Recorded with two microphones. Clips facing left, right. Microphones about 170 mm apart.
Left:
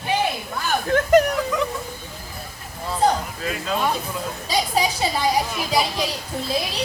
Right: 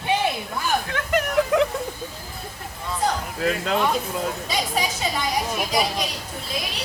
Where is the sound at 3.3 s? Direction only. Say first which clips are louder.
Right 3 dB; 60° right (ahead or behind).